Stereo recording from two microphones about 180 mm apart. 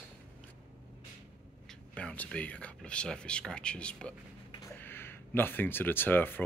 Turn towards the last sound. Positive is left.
turn(degrees=10)  # may be behind; listen again after turning